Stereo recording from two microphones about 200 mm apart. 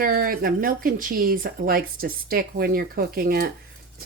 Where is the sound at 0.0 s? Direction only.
45° right (ahead or behind).